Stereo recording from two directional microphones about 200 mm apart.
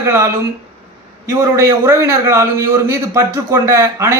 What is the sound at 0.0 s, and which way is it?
Speech, 15° right (ahead or behind).